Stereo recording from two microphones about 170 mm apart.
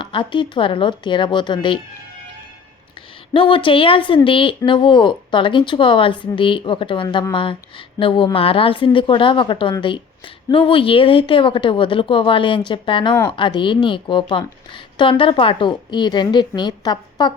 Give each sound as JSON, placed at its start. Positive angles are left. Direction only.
{"t": 0.0, "sound": "a woman's voice", "side_deg": 30}
{"t": 3.3, "sound": "a woman's voice", "side_deg": 30}